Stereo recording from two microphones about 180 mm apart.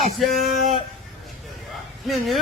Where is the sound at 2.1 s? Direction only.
Centre (ahead or behind).